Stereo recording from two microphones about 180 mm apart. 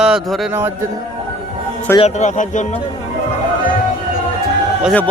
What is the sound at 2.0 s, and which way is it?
Speech, 40° left (ahead or behind).